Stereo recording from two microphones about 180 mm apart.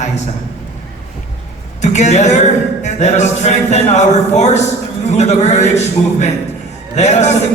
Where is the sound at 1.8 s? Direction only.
40° left (ahead or behind).